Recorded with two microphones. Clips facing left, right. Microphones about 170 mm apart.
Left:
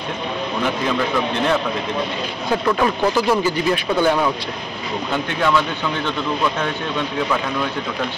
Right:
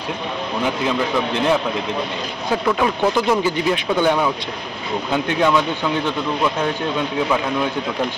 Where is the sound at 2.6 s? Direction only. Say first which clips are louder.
Even; 5° right (ahead or behind).